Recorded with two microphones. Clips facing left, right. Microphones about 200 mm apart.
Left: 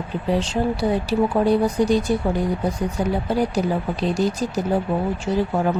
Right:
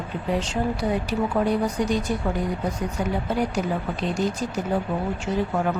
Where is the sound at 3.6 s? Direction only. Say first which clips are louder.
Left 4 dB; 35° left (ahead or behind).